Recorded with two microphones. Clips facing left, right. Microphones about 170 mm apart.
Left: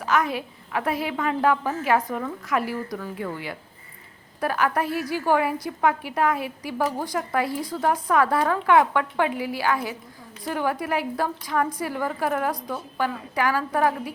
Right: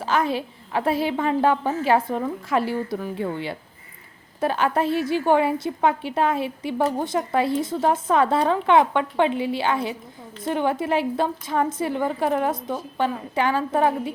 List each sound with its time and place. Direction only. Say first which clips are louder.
0.0 s a woman's voice: right 1 dB; 30° right (ahead or behind)